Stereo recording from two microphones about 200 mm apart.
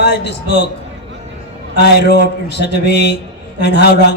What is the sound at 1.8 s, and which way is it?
Speech, 55° left (ahead or behind).